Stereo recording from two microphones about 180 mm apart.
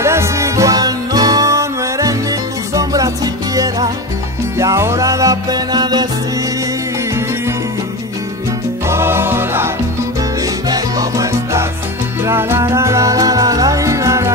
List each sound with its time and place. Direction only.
0.0 s music: 15° right (ahead or behind)
8.8 s music: 15° right (ahead or behind)